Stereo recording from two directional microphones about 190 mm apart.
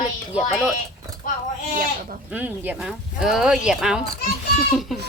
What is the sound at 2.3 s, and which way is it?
Speech, 10° right (ahead or behind).